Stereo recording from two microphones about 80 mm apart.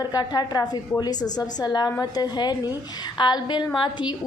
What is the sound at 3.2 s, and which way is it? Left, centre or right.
Speech, left.